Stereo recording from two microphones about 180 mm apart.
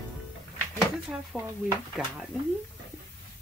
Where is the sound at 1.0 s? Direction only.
5° right (ahead or behind).